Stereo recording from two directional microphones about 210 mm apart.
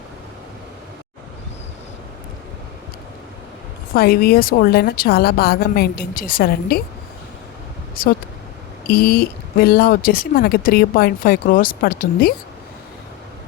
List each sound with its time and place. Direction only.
3.9 s speech: 45° left (ahead or behind)
8.0 s speech: 45° left (ahead or behind)